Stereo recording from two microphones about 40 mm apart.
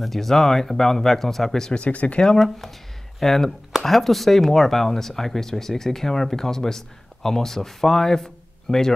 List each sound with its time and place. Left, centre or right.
0.0 s speech: centre
1.7 s speech: left
2.3 s speech: centre